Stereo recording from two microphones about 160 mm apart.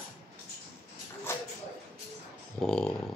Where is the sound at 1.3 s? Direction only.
15° left (ahead or behind).